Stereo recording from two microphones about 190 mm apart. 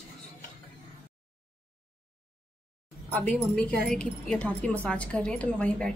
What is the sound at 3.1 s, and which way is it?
Speech, 5° left (ahead or behind).